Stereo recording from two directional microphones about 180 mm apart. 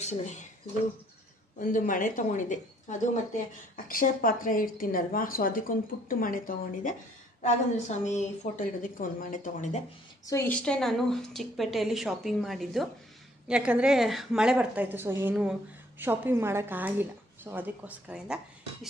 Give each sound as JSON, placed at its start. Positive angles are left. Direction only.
{"t": 0.0, "sound": "speech", "side_deg": 40}
{"t": 1.6, "sound": "speech", "side_deg": 45}
{"t": 10.2, "sound": "a woman's voice", "side_deg": 15}